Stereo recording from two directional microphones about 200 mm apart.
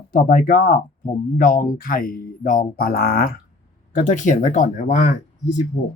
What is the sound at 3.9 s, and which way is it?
Speech, 35° left (ahead or behind).